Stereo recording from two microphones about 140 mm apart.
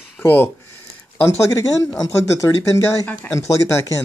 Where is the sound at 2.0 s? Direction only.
20° left (ahead or behind).